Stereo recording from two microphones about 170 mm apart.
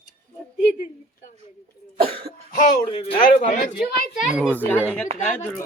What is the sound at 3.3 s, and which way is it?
Speech, 55° left (ahead or behind).